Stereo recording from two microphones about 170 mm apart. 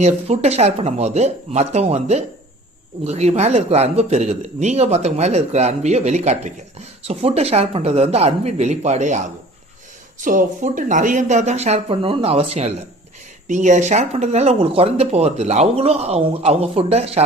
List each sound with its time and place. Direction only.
0.0 s speech: 40° right (ahead or behind)